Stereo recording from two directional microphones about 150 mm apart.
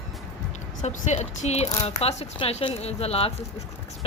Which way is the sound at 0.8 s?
50° left (ahead or behind).